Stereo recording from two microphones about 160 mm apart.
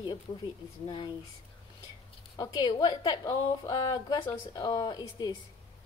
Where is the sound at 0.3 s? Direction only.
25° left (ahead or behind).